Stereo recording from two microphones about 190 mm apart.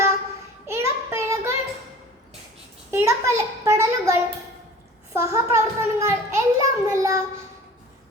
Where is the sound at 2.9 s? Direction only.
15° right (ahead or behind).